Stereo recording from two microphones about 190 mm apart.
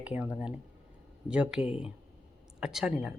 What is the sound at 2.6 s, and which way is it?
Speech, centre (ahead or behind).